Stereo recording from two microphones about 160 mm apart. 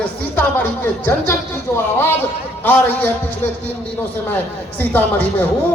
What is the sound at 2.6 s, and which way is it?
Speech, 10° left (ahead or behind).